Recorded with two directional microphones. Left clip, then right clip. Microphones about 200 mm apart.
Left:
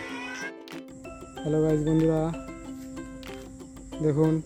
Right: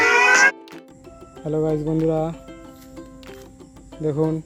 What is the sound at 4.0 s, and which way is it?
Speech, centre (ahead or behind).